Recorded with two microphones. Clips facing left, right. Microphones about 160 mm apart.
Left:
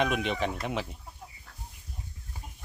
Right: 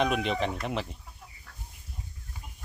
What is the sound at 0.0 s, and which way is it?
Speech, centre (ahead or behind).